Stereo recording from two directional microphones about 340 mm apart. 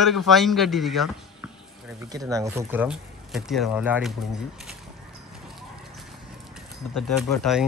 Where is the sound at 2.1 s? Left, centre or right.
Centre.